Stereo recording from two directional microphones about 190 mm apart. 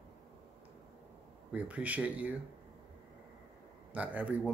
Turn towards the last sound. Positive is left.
turn(degrees=-10)  # may be behind; listen again after turning